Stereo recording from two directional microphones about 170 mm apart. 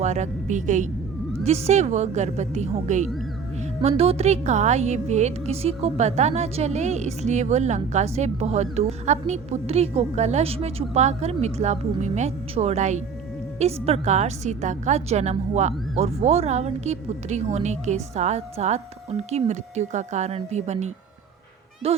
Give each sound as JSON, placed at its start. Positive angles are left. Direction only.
{"t": 0.0, "sound": "a woman's voice", "side_deg": -45}